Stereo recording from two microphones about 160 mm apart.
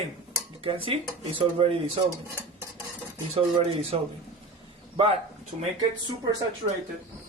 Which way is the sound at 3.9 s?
40° right (ahead or behind).